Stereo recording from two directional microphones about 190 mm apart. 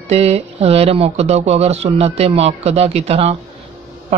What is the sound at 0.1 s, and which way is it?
Speech, 35° right (ahead or behind).